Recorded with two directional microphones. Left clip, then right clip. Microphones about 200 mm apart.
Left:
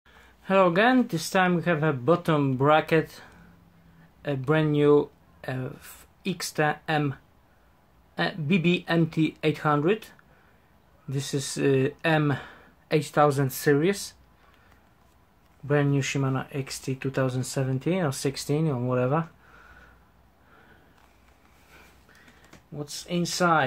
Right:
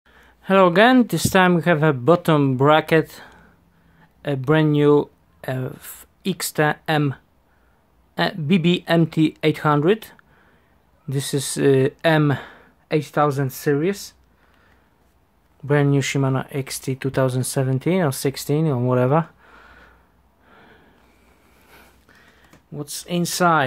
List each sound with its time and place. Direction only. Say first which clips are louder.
0.1 s speech: right 5 dB; 30° right (ahead or behind)
15.6 s speech: right 6 dB; 40° right (ahead or behind)
22.8 s speech: right 5 dB; 50° right (ahead or behind)